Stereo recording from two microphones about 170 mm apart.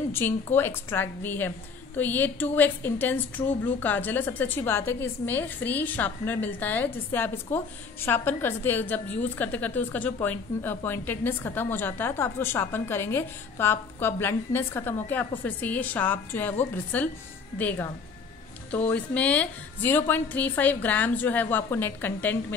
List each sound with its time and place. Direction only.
0.1 s a woman's voice: 15° left (ahead or behind)